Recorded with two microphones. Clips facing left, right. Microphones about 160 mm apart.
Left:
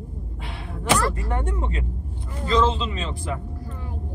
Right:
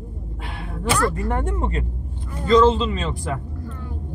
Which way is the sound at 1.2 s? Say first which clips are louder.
Right 3 dB; 50° right (ahead or behind).